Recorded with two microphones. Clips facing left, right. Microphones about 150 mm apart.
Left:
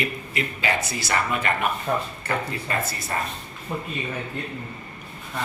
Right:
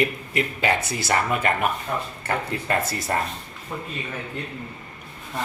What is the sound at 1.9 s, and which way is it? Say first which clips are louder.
Speech: left 3 dB; 50° left (ahead or behind).